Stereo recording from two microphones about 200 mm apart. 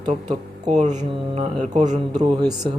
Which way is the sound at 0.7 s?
35° right (ahead or behind).